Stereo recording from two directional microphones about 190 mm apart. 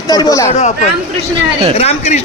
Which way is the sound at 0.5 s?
35° left (ahead or behind).